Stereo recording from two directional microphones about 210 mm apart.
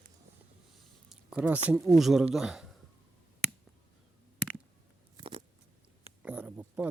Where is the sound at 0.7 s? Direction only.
Centre (ahead or behind).